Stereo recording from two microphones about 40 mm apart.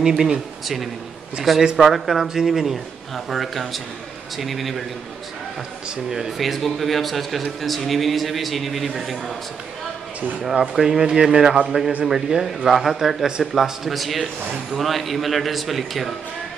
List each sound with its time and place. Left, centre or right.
0.0 s speech: centre
1.9 s a man's voice: centre
6.0 s speech: centre
6.3 s a man's voice: centre
10.5 s a man's voice: centre